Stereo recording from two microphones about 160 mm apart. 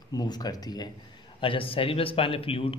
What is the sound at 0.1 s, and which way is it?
A man's voice, 25° left (ahead or behind).